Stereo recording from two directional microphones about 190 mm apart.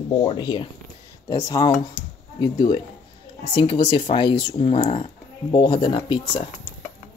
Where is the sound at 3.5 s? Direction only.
25° left (ahead or behind).